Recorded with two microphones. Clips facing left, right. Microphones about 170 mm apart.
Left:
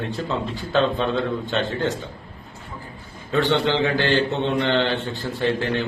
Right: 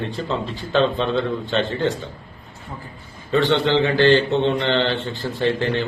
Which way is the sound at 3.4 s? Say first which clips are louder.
Right 1 dB; 10° left (ahead or behind).